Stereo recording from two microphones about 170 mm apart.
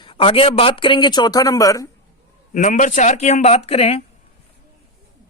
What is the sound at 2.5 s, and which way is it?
Speech, 50° left (ahead or behind).